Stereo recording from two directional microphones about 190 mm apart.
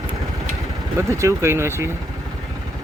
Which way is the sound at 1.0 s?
15° right (ahead or behind).